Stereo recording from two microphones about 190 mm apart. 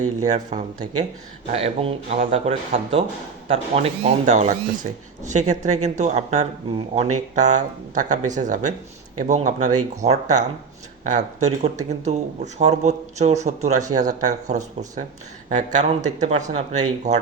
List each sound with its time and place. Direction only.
0.3 s speech: 40° right (ahead or behind)